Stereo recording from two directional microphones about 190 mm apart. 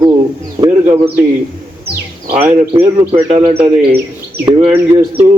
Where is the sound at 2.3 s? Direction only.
30° right (ahead or behind).